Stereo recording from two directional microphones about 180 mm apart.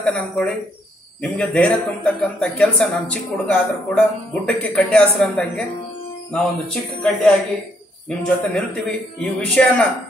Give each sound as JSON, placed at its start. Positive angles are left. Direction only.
{"t": 0.0, "sound": "speech", "side_deg": 5}
{"t": 8.5, "sound": "speech", "side_deg": 5}